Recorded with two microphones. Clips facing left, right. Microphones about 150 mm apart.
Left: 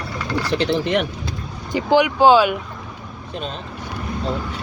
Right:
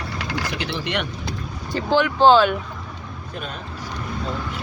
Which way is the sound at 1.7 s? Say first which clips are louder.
Left 3 dB; 15° left (ahead or behind).